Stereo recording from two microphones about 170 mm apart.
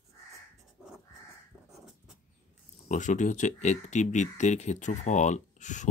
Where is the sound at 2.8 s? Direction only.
45° left (ahead or behind).